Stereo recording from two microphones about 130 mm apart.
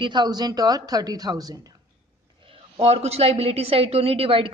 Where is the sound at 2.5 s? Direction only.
55° right (ahead or behind).